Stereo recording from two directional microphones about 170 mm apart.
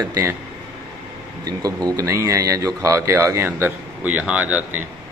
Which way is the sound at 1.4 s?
20° right (ahead or behind).